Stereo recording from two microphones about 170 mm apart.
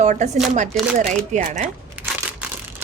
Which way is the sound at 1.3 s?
45° right (ahead or behind).